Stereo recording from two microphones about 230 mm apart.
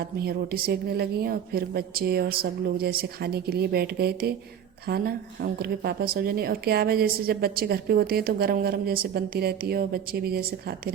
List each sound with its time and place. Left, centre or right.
0.2 s a woman's voice: right